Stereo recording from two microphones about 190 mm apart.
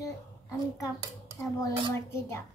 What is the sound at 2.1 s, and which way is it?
Speech, 15° left (ahead or behind).